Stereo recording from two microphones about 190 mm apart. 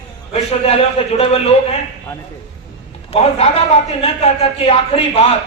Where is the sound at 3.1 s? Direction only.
30° left (ahead or behind).